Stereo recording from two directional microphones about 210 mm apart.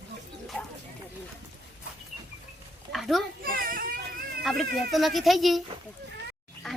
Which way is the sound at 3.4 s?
45° right (ahead or behind).